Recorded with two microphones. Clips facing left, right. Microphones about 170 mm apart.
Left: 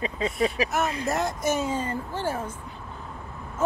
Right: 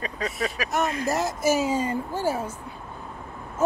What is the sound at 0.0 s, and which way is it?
Speech, 25° left (ahead or behind).